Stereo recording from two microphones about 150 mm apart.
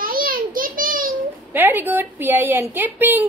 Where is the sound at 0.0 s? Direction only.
75° right (ahead or behind).